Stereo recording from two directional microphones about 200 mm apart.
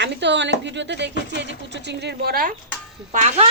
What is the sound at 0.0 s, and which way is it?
Speech, 60° right (ahead or behind).